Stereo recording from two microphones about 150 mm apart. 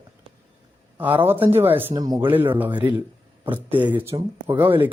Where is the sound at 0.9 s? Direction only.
10° right (ahead or behind).